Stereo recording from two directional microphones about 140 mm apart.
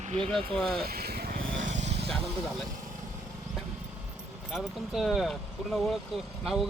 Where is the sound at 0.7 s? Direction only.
90° right; by 2.2 s 45° right (ahead or behind).